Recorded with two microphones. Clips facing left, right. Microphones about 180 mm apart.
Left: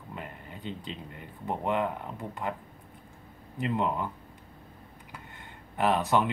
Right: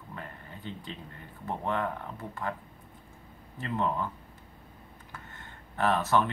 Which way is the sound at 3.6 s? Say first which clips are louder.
Left 2 dB; 15° left (ahead or behind).